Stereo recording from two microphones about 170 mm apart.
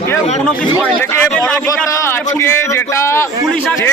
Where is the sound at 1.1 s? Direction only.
5° left (ahead or behind).